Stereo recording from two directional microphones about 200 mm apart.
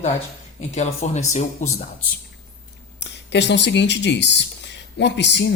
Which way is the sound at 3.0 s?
60° left (ahead or behind).